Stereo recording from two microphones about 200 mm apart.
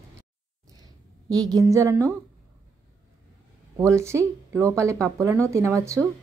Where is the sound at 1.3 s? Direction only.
20° right (ahead or behind).